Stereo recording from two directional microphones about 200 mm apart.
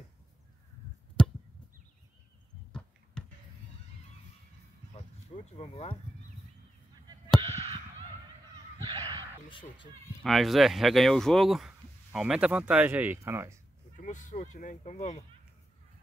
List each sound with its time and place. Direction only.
1.2 s chop: 5° left (ahead or behind)
4.9 s a sound: 35° left (ahead or behind)
7.4 s honk: 30° right (ahead or behind)
8.9 s crow: 25° right (ahead or behind)
9.5 s speech: 25° left (ahead or behind)
10.2 s speech: centre (ahead or behind)
13.9 s speech: 40° left (ahead or behind)